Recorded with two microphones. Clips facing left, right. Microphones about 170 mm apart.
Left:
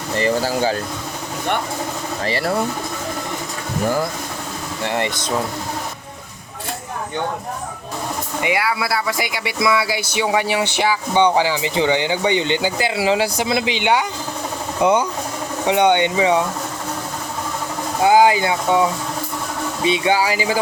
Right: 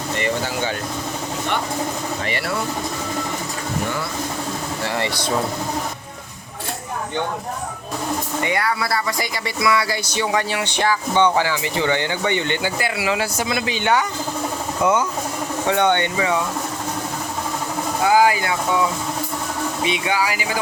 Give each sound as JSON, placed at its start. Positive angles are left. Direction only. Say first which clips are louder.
{"t": 0.2, "sound": "speech", "louder": "left 6 dB", "side_deg": 35}
{"t": 2.2, "sound": "speech", "louder": "left 7 dB", "side_deg": 35}
{"t": 4.8, "sound": "speech", "louder": "left 4 dB", "side_deg": 20}
{"t": 8.4, "sound": "speech", "louder": "left 3 dB", "side_deg": 5}
{"t": 13.0, "sound": "speech", "louder": "left 6 dB", "side_deg": 30}
{"t": 13.2, "sound": "speech", "louder": "left 3 dB", "side_deg": 15}
{"t": 14.8, "sound": "speech", "louder": "left 3 dB", "side_deg": 30}
{"t": 15.6, "sound": "speech", "louder": "left 3 dB", "side_deg": 15}
{"t": 18.0, "sound": "speech", "louder": "left 3 dB", "side_deg": 25}